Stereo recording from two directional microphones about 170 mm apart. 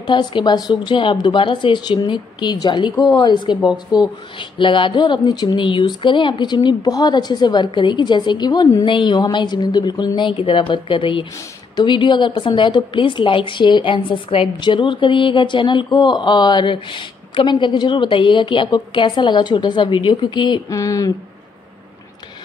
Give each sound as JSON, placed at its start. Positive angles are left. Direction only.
{"t": 0.0, "sound": "a woman's voice", "side_deg": 25}